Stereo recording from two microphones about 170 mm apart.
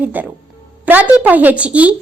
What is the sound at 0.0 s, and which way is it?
A woman's voice, 10° right (ahead or behind).